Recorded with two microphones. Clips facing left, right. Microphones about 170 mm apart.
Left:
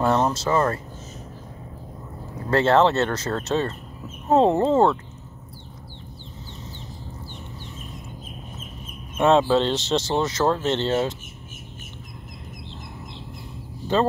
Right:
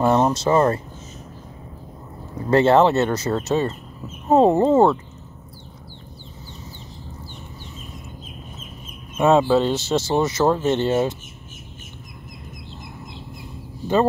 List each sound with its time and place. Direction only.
0.0 s speech: 15° right (ahead or behind)
2.5 s speech: 15° right (ahead or behind)
9.1 s speech: 5° right (ahead or behind)